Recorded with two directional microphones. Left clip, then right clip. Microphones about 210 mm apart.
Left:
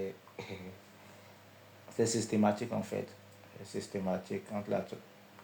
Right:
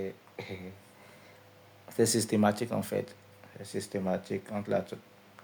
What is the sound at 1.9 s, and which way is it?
Speech, 50° right (ahead or behind).